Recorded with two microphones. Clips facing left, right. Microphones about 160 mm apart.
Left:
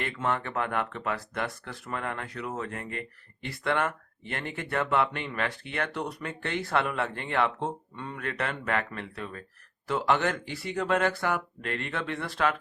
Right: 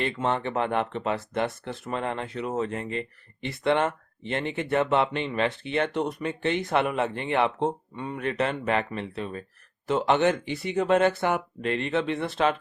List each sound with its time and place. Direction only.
0.0 s speech: 25° right (ahead or behind)